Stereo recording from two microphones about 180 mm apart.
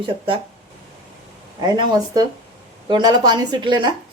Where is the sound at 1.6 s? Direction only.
25° right (ahead or behind).